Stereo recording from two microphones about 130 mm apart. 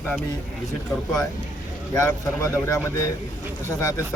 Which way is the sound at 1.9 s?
25° left (ahead or behind).